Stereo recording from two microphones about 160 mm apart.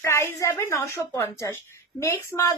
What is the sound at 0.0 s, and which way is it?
A woman's voice, 20° left (ahead or behind).